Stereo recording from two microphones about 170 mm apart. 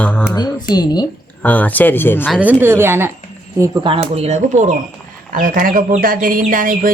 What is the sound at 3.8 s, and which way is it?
Speech, 35° right (ahead or behind).